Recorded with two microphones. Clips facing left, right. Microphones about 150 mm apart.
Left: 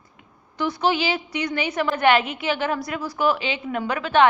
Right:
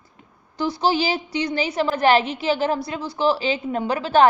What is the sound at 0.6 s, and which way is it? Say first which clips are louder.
A woman's voice: right 1 dB; 30° right (ahead or behind).